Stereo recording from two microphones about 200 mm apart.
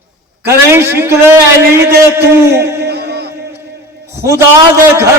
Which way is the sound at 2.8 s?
55° right (ahead or behind).